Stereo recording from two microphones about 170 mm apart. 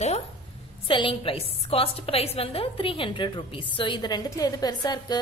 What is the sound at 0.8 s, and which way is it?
A woman's voice, 30° left (ahead or behind).